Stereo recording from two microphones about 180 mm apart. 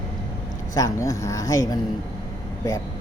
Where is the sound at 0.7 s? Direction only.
20° left (ahead or behind).